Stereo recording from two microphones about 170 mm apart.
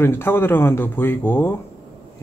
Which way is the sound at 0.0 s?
15° left (ahead or behind).